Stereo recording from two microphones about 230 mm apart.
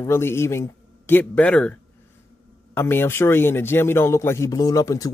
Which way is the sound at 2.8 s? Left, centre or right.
Centre.